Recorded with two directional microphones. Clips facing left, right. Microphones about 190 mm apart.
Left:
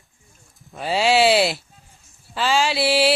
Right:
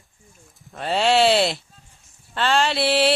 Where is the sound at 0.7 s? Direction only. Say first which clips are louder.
Left 1 dB; 5° left (ahead or behind).